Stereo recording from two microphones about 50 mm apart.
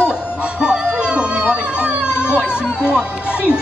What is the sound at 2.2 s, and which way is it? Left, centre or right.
Music, centre.